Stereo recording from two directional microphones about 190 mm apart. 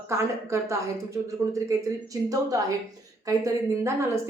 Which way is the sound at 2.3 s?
20° right (ahead or behind).